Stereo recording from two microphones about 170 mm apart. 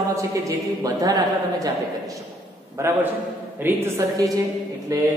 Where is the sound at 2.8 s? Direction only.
15° right (ahead or behind).